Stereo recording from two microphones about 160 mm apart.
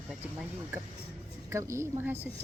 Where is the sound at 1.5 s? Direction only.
20° right (ahead or behind).